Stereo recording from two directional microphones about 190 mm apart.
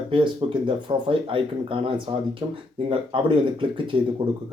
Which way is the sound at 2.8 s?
30° right (ahead or behind).